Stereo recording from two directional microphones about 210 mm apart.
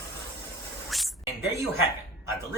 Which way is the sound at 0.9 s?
Centre (ahead or behind).